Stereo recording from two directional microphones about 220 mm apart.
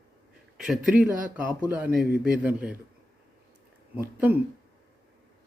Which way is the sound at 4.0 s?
10° right (ahead or behind).